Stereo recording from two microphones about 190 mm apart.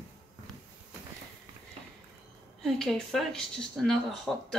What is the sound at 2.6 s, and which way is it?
Speech, centre (ahead or behind).